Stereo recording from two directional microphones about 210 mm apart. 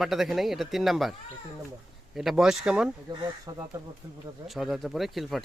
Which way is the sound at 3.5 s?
20° right (ahead or behind).